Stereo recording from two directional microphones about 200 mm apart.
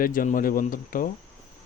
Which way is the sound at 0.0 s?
45° left (ahead or behind).